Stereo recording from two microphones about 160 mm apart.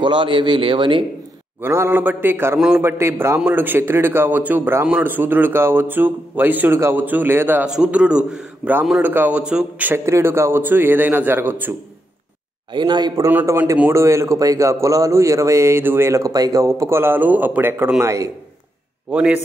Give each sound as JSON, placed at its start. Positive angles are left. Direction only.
{"t": 0.0, "sound": "a man's voice", "side_deg": -30}
{"t": 1.6, "sound": "speech", "side_deg": -15}
{"t": 12.7, "sound": "speech", "side_deg": -30}
{"t": 13.3, "sound": "speech", "side_deg": -10}
{"t": 19.1, "sound": "speech", "side_deg": -5}